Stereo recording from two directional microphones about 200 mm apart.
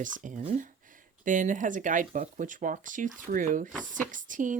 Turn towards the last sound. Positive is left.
turn(degrees=-40)  # may be behind; listen again after turning